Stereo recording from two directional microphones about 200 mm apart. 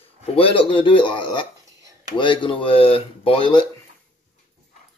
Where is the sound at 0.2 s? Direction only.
30° left (ahead or behind).